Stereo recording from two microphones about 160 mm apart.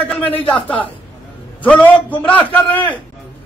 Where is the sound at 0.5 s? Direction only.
35° left (ahead or behind).